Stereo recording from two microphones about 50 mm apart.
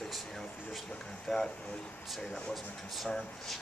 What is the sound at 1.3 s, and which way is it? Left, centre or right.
Speech, centre.